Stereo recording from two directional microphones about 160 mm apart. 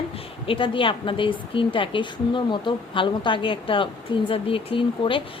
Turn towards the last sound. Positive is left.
turn(degrees=35)  # may be behind; listen again after turning